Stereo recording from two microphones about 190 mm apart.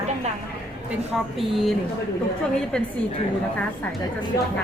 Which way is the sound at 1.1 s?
Centre (ahead or behind).